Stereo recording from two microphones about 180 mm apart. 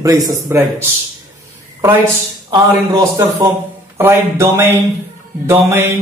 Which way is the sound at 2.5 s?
20° right (ahead or behind).